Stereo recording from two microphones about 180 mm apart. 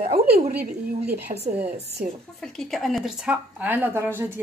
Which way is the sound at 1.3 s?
35° right (ahead or behind).